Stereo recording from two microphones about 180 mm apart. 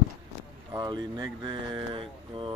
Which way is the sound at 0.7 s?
20° right (ahead or behind).